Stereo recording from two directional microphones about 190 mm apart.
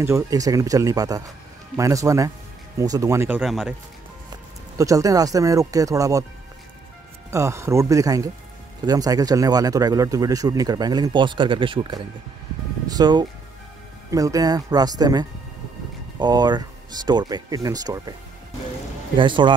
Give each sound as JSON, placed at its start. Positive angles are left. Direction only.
{"t": 0.0, "sound": "speech", "side_deg": -15}
{"t": 4.7, "sound": "speech", "side_deg": -15}
{"t": 7.2, "sound": "speech", "side_deg": -15}
{"t": 19.1, "sound": "speech", "side_deg": -25}